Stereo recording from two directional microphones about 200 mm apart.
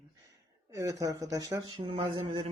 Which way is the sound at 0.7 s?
20° right (ahead or behind).